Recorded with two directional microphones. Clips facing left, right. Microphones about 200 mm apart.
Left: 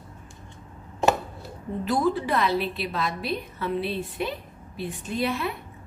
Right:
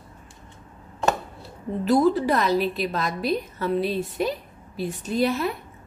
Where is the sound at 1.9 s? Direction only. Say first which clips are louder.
Right 5 dB; 40° right (ahead or behind).